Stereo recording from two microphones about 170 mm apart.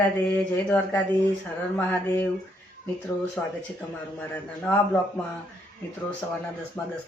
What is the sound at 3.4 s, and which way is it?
Speech, 10° left (ahead or behind).